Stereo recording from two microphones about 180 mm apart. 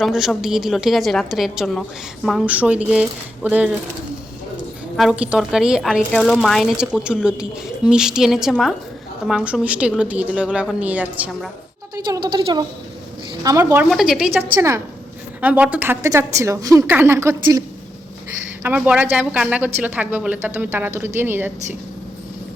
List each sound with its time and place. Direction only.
0.0 s a woman's voice: centre (ahead or behind)
4.9 s a woman's voice: 5° right (ahead or behind)
11.9 s speech: 20° right (ahead or behind)
13.9 s a woman's voice: 5° right (ahead or behind)
15.4 s speech: 10° right (ahead or behind)
18.6 s speech: 10° right (ahead or behind)